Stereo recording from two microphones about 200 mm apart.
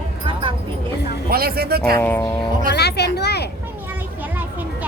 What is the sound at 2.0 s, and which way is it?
Speech, 10° left (ahead or behind).